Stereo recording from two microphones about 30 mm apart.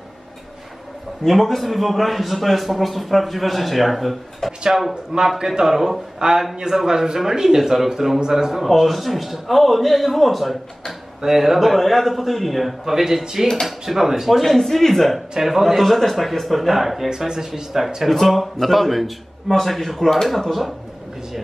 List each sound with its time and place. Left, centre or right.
1.2 s a man's voice: centre
5.4 s a man's voice: right
5.7 s speech: centre
6.1 s a man's voice: right
7.0 s speech: centre
8.7 s a man's voice: centre
12.8 s speech: centre
14.4 s speech: centre
15.4 s speech: centre
15.8 s a man's voice: centre
17.1 s speech: centre
18.2 s a man's voice: centre